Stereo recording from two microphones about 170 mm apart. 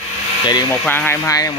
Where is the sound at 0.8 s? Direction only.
10° left (ahead or behind).